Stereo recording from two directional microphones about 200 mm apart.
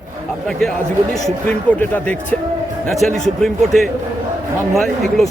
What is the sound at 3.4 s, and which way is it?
Speech, centre (ahead or behind).